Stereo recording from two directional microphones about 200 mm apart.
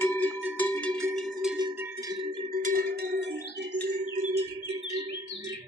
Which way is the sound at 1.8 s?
15° right (ahead or behind).